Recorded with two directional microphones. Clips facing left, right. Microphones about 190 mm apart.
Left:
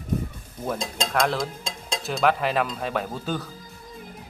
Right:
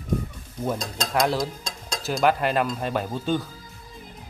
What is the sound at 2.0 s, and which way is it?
Speech, centre (ahead or behind).